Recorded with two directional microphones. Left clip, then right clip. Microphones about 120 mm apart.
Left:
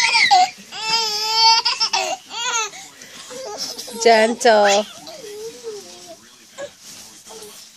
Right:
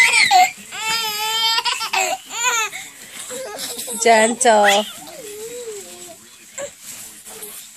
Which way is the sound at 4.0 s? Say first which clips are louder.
Even; 15° left (ahead or behind).